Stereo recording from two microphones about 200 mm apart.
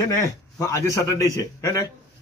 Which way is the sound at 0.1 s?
15° left (ahead or behind).